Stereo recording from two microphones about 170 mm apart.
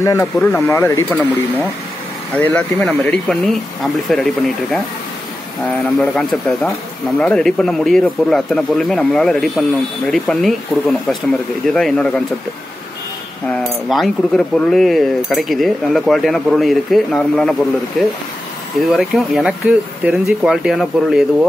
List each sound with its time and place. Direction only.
0.0 s speech: 15° left (ahead or behind)
2.3 s speech: 10° left (ahead or behind)
13.5 s speech: centre (ahead or behind)